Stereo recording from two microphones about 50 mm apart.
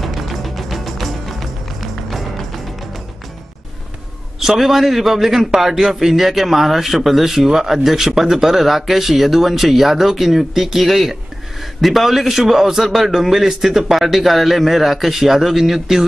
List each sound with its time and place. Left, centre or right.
0.0 s music: centre
4.4 s a man's voice: centre